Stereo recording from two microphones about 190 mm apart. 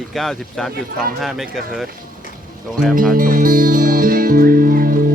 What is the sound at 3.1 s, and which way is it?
Music, 45° right (ahead or behind).